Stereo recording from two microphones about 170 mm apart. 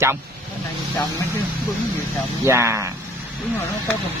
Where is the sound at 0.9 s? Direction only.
15° left (ahead or behind).